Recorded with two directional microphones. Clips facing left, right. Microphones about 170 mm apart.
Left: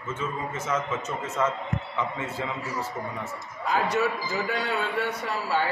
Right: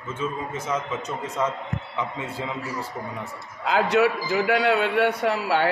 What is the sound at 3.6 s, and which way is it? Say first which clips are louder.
A man's voice: right 5 dB; 80° right.